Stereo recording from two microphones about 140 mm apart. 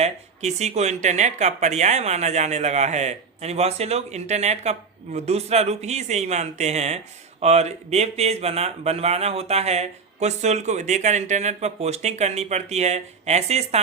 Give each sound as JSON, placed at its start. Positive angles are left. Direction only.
{"t": 0.0, "sound": "speech", "side_deg": -50}